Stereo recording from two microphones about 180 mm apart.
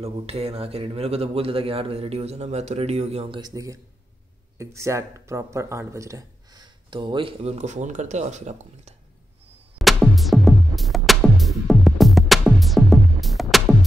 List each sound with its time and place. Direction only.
0.0 s speech: 35° right (ahead or behind)
9.8 s music: centre (ahead or behind)